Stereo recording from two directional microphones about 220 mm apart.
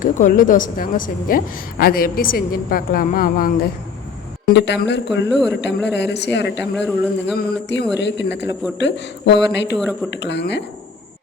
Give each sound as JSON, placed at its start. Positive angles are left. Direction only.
{"t": 0.0, "sound": "a woman's voice", "side_deg": 35}
{"t": 4.4, "sound": "speech", "side_deg": 50}
{"t": 6.7, "sound": "speech", "side_deg": 0}
{"t": 7.3, "sound": "speech", "side_deg": 50}